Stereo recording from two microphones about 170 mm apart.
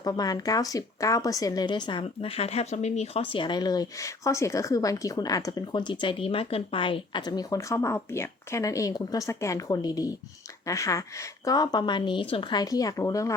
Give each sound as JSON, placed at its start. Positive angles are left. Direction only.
{"t": 0.0, "sound": "a woman's voice", "side_deg": 20}